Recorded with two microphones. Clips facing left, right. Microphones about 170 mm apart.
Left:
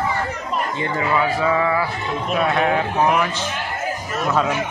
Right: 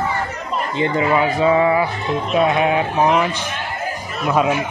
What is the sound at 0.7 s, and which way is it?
Speech, 25° right (ahead or behind).